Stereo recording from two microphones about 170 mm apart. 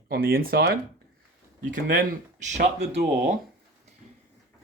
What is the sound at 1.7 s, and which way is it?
Speech, 50° right (ahead or behind).